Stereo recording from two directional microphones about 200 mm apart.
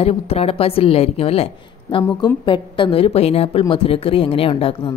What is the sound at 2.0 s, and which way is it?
Speech, 15° left (ahead or behind).